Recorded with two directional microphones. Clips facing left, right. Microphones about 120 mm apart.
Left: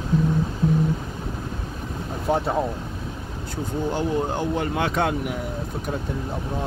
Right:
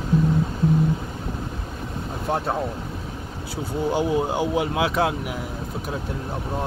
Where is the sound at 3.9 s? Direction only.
10° right (ahead or behind).